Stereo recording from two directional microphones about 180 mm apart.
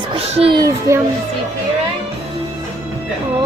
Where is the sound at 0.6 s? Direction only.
20° right (ahead or behind).